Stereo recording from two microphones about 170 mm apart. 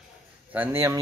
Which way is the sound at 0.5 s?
10° right (ahead or behind).